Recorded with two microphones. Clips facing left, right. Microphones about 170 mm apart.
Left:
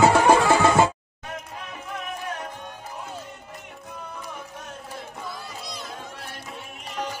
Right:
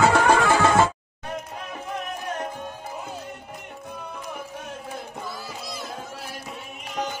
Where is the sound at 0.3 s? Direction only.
20° left (ahead or behind).